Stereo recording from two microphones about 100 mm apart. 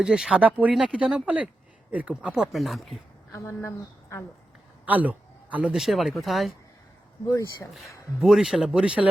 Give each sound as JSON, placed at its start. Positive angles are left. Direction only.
{"t": 0.0, "sound": "speech", "side_deg": -5}
{"t": 3.3, "sound": "speech", "side_deg": 25}
{"t": 4.9, "sound": "a sound", "side_deg": -15}
{"t": 5.7, "sound": "speech", "side_deg": 0}
{"t": 7.7, "sound": "speech", "side_deg": 0}